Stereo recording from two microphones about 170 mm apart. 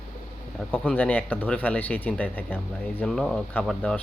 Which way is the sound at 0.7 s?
10° left (ahead or behind).